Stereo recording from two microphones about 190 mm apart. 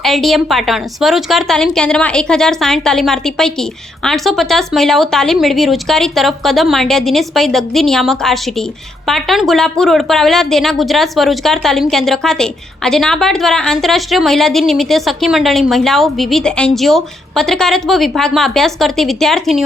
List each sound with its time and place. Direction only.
0.0 s a woman's voice: centre (ahead or behind)